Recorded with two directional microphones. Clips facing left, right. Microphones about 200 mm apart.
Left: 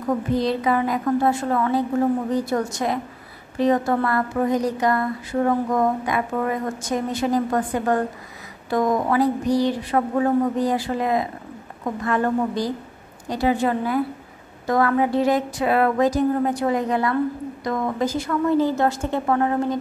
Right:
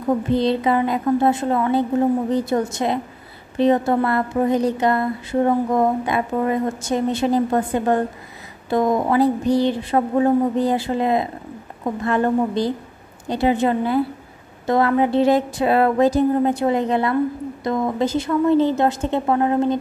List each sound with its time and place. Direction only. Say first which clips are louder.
0.3 s a woman's voice: right 2 dB; 25° right (ahead or behind)